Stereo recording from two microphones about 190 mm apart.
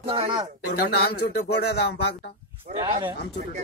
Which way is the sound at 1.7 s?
60° left (ahead or behind).